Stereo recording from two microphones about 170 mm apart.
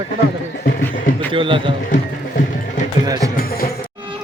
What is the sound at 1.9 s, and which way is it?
Music, 50° left (ahead or behind).